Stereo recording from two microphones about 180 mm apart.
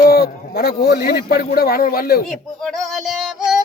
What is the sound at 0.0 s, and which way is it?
Speech, 60° left (ahead or behind).